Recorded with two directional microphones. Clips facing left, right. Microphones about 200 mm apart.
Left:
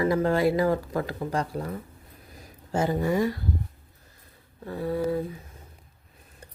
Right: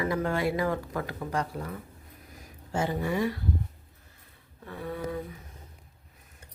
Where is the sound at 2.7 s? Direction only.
40° left (ahead or behind).